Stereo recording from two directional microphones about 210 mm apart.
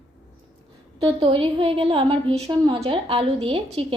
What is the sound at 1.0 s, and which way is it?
A woman's voice, 25° right (ahead or behind).